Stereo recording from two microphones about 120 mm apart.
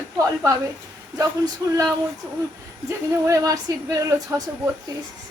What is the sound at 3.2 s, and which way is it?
A woman's voice, 25° right (ahead or behind).